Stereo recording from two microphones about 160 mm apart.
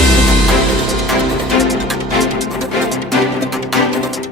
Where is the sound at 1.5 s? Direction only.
Centre (ahead or behind).